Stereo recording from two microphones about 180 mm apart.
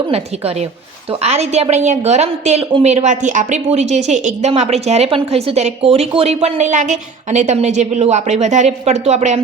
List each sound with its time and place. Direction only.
1.2 s a woman's voice: 35° right (ahead or behind)